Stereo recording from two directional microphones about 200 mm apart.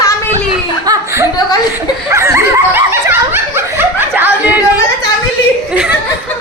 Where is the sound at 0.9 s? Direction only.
15° right (ahead or behind).